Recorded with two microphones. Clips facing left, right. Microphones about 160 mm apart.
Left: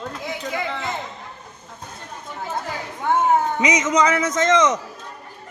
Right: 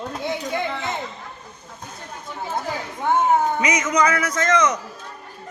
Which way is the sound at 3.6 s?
20° left (ahead or behind).